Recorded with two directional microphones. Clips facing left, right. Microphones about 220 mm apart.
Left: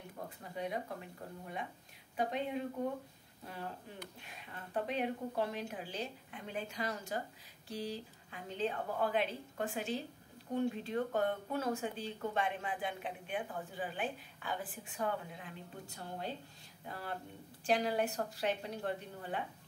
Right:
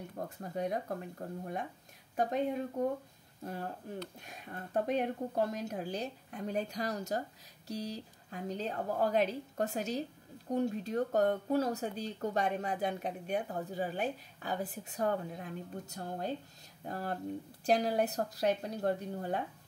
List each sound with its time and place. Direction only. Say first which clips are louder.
0.4 s a woman's voice: right 4 dB; 45° right (ahead or behind)
4.2 s a woman's voice: right 5 dB; 45° right (ahead or behind)